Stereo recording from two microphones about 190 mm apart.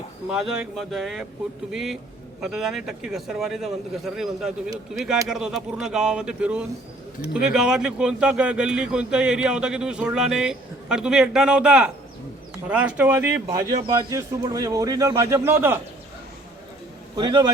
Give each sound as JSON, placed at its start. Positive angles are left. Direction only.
{"t": 0.3, "sound": "a man's voice", "side_deg": -5}
{"t": 17.2, "sound": "a man's voice", "side_deg": -20}